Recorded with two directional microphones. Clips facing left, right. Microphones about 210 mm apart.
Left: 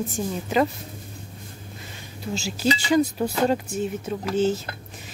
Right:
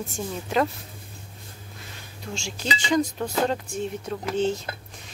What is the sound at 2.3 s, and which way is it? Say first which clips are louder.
Speech: left 7 dB; 5° left (ahead or behind).